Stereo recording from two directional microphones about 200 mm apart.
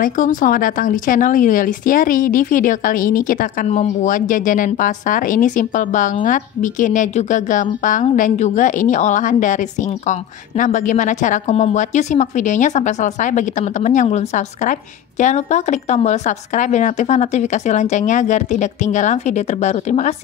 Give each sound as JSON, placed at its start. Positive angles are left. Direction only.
{"t": 0.0, "sound": "speech", "side_deg": 40}